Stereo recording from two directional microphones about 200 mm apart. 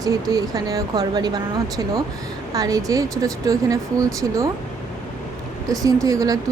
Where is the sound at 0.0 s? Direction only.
15° right (ahead or behind).